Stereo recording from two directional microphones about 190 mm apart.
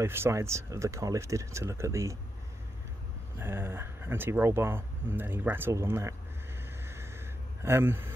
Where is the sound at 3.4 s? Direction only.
10° right (ahead or behind).